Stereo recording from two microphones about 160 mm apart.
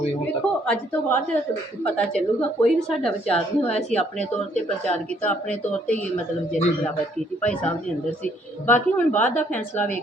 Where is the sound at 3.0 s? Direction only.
5° left (ahead or behind).